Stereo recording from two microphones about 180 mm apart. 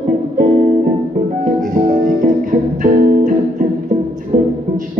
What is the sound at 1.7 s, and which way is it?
Music, 45° right (ahead or behind).